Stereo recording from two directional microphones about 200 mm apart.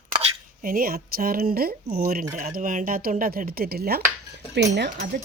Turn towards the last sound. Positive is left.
turn(degrees=-55)  # may be behind; listen again after turning